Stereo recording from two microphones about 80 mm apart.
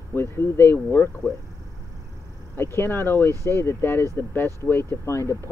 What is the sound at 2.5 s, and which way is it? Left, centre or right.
Speech, left.